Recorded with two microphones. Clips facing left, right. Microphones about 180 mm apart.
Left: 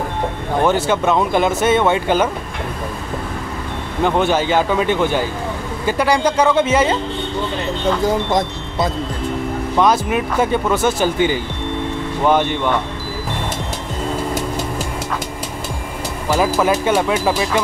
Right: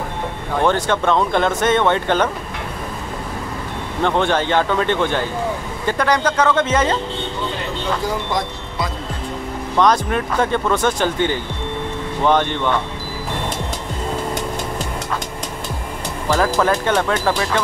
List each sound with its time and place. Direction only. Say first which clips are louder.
0.7 s speech: left 1 dB; 5° left (ahead or behind)
4.0 s speech: left 2 dB; 5° left (ahead or behind)
8.3 s speech: left 4 dB; 25° left (ahead or behind)
9.8 s speech: even; 10° left (ahead or behind)
16.3 s speech: left 1 dB; 10° left (ahead or behind)